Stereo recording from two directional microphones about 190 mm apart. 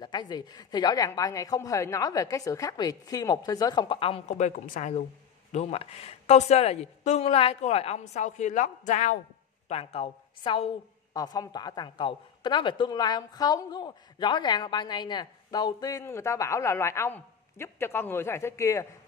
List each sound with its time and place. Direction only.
0.0 s a woman's voice: 25° left (ahead or behind)